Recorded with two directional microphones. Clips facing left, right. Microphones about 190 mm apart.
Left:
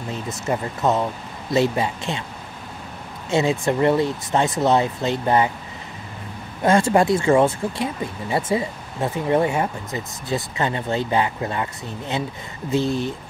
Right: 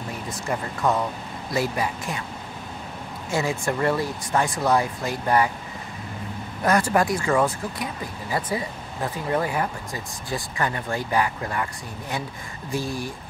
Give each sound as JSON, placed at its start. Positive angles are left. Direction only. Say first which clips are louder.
{"t": 0.1, "sound": "speech", "louder": "left 5 dB", "side_deg": 25}
{"t": 3.3, "sound": "speech", "louder": "left 5 dB", "side_deg": 25}
{"t": 6.6, "sound": "speech", "louder": "left 4 dB", "side_deg": 25}